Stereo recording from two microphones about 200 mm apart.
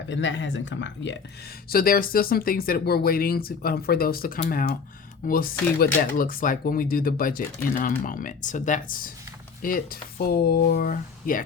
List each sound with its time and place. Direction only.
0.1 s speech: 65° left (ahead or behind)
1.7 s speech: 45° left (ahead or behind)